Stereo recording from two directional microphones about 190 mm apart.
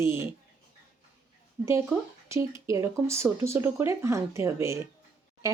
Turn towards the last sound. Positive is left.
turn(degrees=-15)  # may be behind; listen again after turning